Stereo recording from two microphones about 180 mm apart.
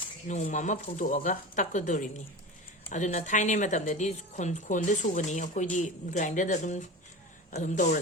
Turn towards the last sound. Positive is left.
turn(degrees=45)  # may be behind; listen again after turning